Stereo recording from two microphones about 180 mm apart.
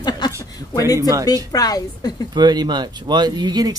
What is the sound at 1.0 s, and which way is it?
Speech, 20° right (ahead or behind).